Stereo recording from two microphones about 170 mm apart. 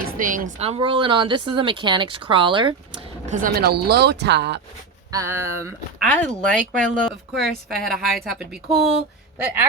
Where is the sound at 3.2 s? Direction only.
60° right (ahead or behind); by 4.6 s 85° right.